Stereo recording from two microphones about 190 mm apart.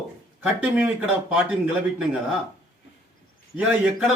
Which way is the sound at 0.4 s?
5° right (ahead or behind).